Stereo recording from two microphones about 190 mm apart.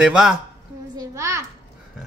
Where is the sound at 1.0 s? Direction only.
15° right (ahead or behind).